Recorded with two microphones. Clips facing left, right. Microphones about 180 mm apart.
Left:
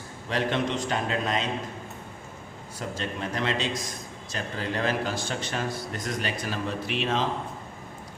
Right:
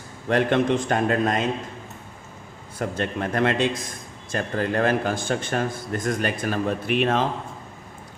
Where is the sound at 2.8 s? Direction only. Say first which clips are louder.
Right 6 dB; 55° right (ahead or behind).